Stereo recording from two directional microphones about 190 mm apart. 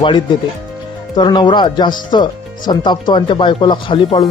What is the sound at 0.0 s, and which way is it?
Speech, 25° left (ahead or behind).